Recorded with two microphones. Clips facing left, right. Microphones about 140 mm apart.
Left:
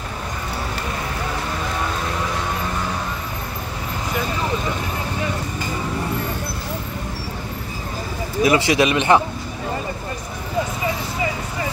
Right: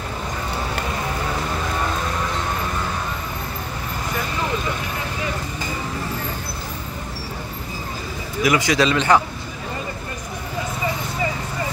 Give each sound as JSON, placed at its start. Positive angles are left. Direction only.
{"t": 8.4, "sound": "speech", "side_deg": 25}